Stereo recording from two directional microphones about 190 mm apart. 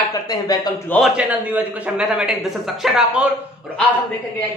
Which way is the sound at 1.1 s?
10° right (ahead or behind).